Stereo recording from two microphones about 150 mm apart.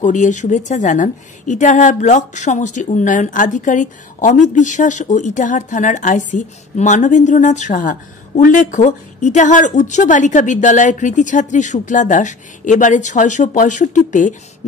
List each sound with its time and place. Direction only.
0.0 s a woman's voice: 55° left (ahead or behind)